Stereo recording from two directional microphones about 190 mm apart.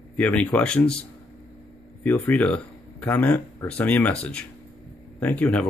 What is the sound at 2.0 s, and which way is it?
Speech, 10° left (ahead or behind).